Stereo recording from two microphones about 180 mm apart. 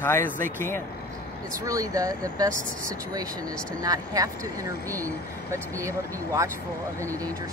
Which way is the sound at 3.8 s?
20° right (ahead or behind).